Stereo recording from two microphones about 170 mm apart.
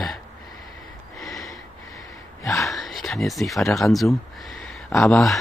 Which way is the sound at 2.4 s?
20° left (ahead or behind).